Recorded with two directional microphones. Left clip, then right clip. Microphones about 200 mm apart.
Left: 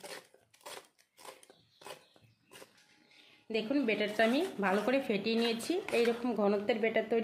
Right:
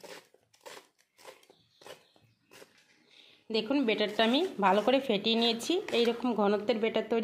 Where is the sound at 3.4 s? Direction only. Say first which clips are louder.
Right 3 dB; 35° right (ahead or behind).